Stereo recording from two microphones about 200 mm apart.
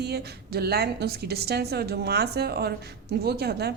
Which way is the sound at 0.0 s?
55° right (ahead or behind).